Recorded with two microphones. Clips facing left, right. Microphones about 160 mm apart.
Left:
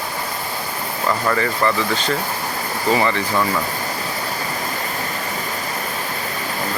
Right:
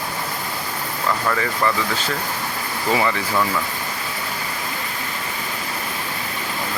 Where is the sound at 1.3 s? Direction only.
Centre (ahead or behind).